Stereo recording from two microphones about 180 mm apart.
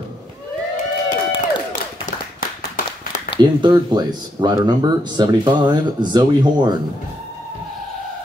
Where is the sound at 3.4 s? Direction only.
25° right (ahead or behind).